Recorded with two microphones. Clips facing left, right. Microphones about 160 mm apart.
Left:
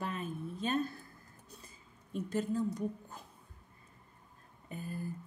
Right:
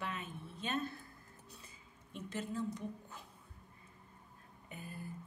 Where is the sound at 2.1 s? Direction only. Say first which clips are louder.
Left 7 dB; 40° left (ahead or behind).